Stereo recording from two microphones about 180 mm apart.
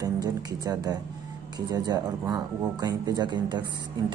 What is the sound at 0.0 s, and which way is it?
Speech, 20° right (ahead or behind).